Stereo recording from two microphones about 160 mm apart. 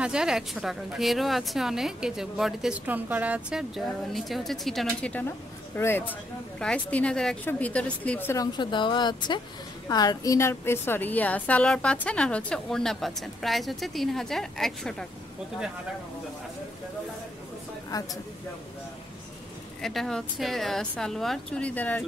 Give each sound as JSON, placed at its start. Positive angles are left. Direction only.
{"t": 0.0, "sound": "a woman's voice", "side_deg": -5}
{"t": 8.5, "sound": "a woman's voice", "side_deg": 30}
{"t": 19.8, "sound": "a woman's voice", "side_deg": 0}